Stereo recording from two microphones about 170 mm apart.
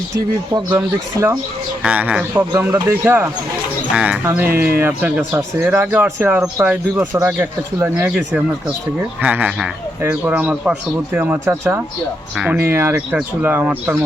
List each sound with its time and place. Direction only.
0.2 s speech: 15° right (ahead or behind)